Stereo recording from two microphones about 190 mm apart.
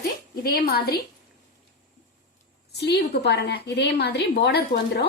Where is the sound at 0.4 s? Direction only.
55° left (ahead or behind).